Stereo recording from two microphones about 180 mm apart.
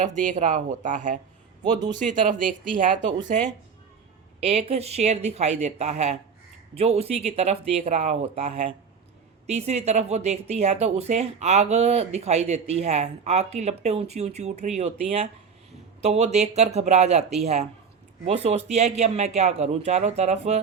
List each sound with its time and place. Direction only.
0.0 s speech: 45° right (ahead or behind)
4.4 s speech: 35° right (ahead or behind)